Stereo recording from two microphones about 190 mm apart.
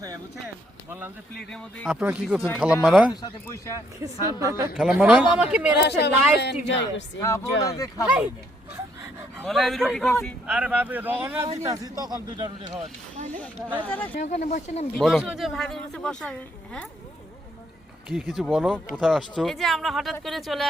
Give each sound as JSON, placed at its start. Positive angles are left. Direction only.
{"t": 0.9, "sound": "speech", "side_deg": -10}
{"t": 1.4, "sound": "speech", "side_deg": 5}
{"t": 3.4, "sound": "speech", "side_deg": 15}
{"t": 4.0, "sound": "speech", "side_deg": -15}
{"t": 4.7, "sound": "speech", "side_deg": -5}
{"t": 5.7, "sound": "a woman's voice", "side_deg": 65}
{"t": 7.2, "sound": "speech", "side_deg": 15}
{"t": 9.4, "sound": "speech", "side_deg": 0}
{"t": 10.4, "sound": "speech", "side_deg": -5}
{"t": 13.1, "sound": "speech", "side_deg": -40}
{"t": 13.8, "sound": "speech", "side_deg": 10}
{"t": 14.3, "sound": "speech", "side_deg": 40}
{"t": 14.9, "sound": "speech", "side_deg": 0}
{"t": 18.1, "sound": "speech", "side_deg": 0}